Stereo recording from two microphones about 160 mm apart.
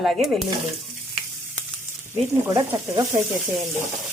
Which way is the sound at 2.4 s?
20° right (ahead or behind).